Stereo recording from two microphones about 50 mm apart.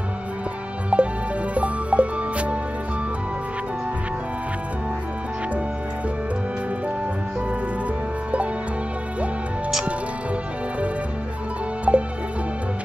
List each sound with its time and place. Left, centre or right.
0.9 s music: right
11.9 s music: right